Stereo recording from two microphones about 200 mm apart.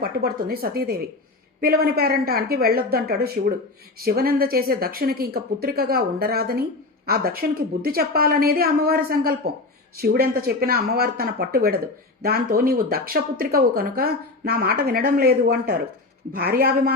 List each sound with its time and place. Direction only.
0.0 s speech: 50° right (ahead or behind)